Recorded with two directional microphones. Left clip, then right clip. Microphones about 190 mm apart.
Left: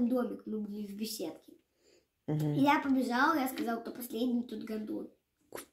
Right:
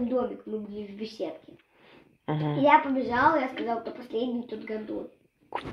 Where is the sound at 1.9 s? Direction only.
30° left (ahead or behind).